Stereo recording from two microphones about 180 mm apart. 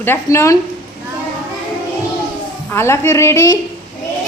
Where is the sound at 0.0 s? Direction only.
15° left (ahead or behind).